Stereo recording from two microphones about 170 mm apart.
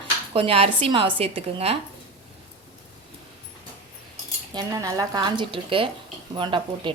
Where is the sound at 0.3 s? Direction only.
35° right (ahead or behind).